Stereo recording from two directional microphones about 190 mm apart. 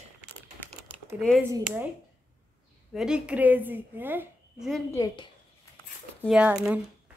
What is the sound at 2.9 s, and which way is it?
A woman's voice, 5° right (ahead or behind).